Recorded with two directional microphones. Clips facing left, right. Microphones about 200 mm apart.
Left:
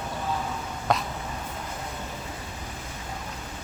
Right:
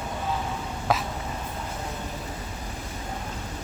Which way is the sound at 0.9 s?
5° right (ahead or behind).